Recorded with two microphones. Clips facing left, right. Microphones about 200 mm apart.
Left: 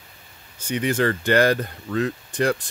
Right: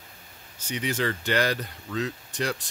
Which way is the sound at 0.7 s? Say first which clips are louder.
Left 6 dB; 55° left (ahead or behind).